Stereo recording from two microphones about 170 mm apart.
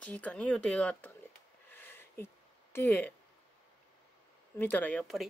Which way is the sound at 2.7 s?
10° left (ahead or behind).